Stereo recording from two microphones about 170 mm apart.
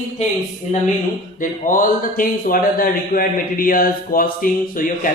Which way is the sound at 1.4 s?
50° left (ahead or behind).